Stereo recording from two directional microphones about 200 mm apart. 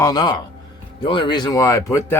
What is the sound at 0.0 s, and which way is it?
Speech, 20° left (ahead or behind).